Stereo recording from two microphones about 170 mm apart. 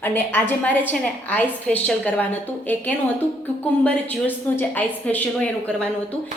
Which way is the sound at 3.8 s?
10° left (ahead or behind).